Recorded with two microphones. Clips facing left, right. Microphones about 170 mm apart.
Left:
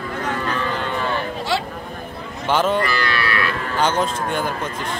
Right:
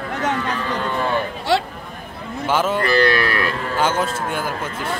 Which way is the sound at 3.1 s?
45° right (ahead or behind).